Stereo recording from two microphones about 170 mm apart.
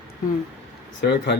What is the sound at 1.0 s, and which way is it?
Speech, 80° left.